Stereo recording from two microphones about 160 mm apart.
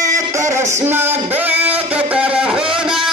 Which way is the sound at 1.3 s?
10° right (ahead or behind).